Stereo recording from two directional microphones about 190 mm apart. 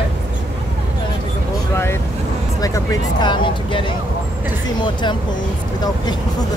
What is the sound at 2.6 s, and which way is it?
Speech, 20° left (ahead or behind).